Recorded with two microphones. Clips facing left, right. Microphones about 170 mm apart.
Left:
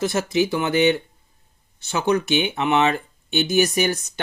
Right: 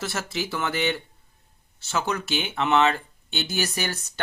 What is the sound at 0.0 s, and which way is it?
Speech, 15° left (ahead or behind).